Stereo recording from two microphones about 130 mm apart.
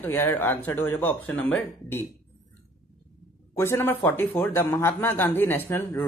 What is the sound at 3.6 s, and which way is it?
Speech, 20° left (ahead or behind).